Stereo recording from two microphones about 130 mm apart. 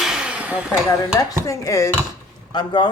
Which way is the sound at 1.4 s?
25° left (ahead or behind).